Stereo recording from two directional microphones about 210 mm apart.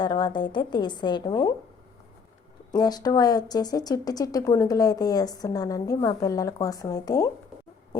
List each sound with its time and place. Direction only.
0.0 s a woman's voice: 20° left (ahead or behind)
2.7 s speech: 20° left (ahead or behind)